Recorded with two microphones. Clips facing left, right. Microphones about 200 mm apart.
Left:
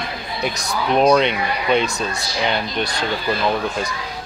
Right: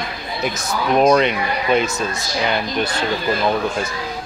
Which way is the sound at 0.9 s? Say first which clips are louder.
Right 1 dB; 5° right (ahead or behind).